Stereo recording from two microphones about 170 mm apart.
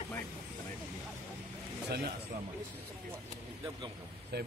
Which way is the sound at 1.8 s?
70° right (ahead or behind).